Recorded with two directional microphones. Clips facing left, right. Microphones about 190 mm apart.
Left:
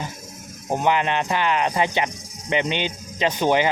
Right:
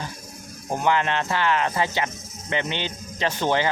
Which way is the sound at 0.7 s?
20° left (ahead or behind).